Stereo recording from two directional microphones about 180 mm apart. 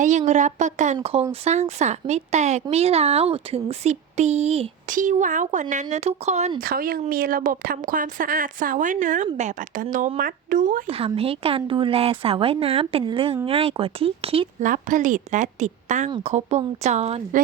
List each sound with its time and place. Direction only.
0.0 s a woman's voice: 45° right (ahead or behind)
4.9 s a woman's voice: 45° right (ahead or behind)
6.6 s a woman's voice: 55° right (ahead or behind)
10.8 s speech: 30° right (ahead or behind)
14.6 s a woman's voice: 45° right (ahead or behind)